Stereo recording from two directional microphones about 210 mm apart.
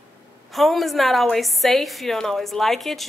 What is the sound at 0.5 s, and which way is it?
A woman's voice, centre (ahead or behind).